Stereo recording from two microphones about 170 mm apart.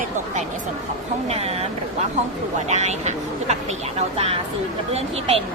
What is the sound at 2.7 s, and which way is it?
A woman's voice, 40° right (ahead or behind).